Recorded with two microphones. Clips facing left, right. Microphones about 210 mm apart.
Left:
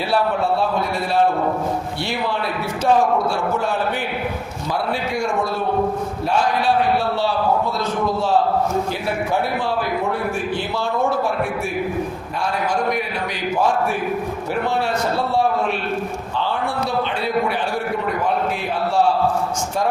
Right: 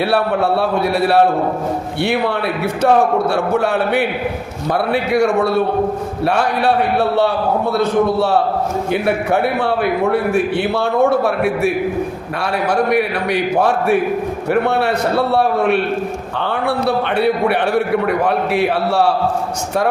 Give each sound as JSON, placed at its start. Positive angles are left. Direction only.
{"t": 0.1, "sound": "a man's voice", "side_deg": -65}
{"t": 2.8, "sound": "a man's voice", "side_deg": -65}
{"t": 7.8, "sound": "a man's voice", "side_deg": -65}